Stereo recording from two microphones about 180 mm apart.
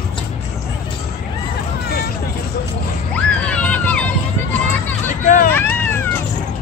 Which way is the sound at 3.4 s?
5° left (ahead or behind).